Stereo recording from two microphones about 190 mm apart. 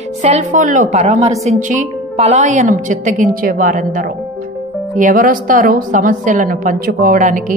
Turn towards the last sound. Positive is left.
turn(degrees=-45)  # may be behind; listen again after turning